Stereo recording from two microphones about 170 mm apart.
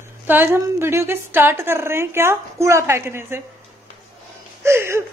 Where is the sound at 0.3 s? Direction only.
15° right (ahead or behind).